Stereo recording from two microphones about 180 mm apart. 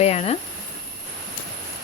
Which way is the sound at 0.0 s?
35° left (ahead or behind).